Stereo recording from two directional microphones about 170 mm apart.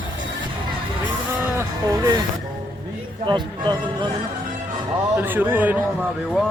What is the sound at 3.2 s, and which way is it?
Music, 25° right (ahead or behind).